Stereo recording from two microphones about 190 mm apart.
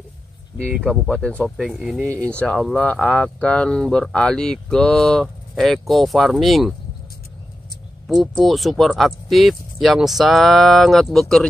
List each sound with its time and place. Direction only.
0.8 s speech: 5° left (ahead or behind); by 2.2 s 10° right (ahead or behind)
2.2 s speech: 5° left (ahead or behind)
8.1 s speech: centre (ahead or behind)